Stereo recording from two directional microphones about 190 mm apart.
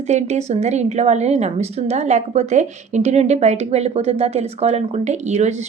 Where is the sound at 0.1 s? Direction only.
40° right (ahead or behind).